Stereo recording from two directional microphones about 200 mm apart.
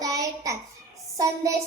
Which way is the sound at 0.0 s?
15° right (ahead or behind).